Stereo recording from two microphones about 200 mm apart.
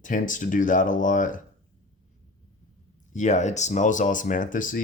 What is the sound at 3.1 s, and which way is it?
Speech, 35° left (ahead or behind).